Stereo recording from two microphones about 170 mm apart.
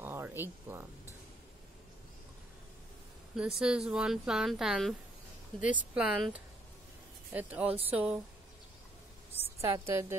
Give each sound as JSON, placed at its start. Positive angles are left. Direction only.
{"t": 0.0, "sound": "a sound", "side_deg": -15}
{"t": 3.3, "sound": "a woman's voice", "side_deg": -5}
{"t": 7.3, "sound": "speech", "side_deg": -10}
{"t": 9.6, "sound": "speech", "side_deg": -15}